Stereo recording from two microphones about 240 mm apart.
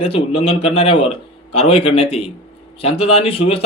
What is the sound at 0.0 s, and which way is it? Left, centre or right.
A man's voice, left.